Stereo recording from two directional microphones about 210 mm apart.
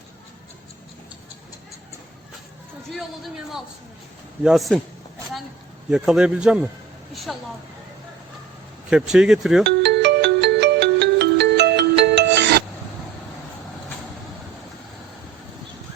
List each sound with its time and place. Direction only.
2.9 s speech: centre (ahead or behind)
5.9 s speech: centre (ahead or behind)
8.9 s speech: 5° right (ahead or behind)
9.6 s ringtone: 55° right (ahead or behind)